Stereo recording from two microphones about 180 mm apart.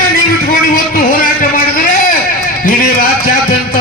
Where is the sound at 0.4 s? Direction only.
50° left (ahead or behind).